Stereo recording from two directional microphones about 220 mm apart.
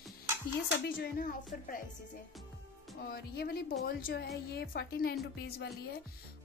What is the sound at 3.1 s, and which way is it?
Speech, 45° left (ahead or behind).